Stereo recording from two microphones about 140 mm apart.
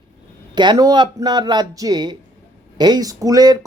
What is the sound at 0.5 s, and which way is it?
Speech, 30° right (ahead or behind).